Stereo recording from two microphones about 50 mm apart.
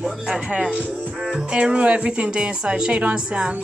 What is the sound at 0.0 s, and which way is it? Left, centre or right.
Speech, centre.